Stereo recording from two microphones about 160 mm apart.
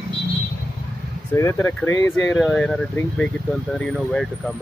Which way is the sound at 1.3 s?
15° left (ahead or behind).